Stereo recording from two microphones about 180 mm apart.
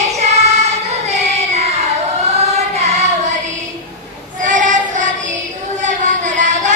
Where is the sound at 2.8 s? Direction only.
40° right (ahead or behind).